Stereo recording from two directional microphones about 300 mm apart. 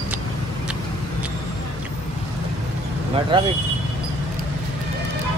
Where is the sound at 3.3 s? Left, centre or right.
Centre.